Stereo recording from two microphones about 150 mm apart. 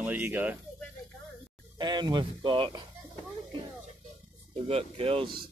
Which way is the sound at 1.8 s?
30° right (ahead or behind).